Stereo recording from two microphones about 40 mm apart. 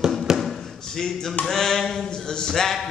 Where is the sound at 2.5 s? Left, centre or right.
Centre.